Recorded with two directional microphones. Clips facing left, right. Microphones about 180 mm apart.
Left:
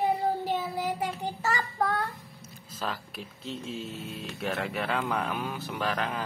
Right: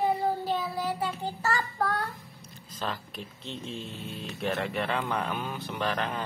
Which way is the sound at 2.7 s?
5° left (ahead or behind).